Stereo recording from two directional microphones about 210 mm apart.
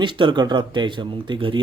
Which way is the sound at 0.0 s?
25° right (ahead or behind).